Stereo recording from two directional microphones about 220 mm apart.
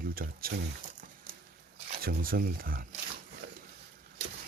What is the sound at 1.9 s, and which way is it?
Speech, 40° right (ahead or behind).